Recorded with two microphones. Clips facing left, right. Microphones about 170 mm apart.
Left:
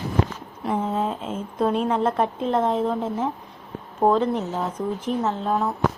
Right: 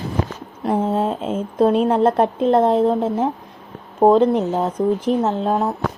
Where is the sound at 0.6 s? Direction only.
35° right (ahead or behind).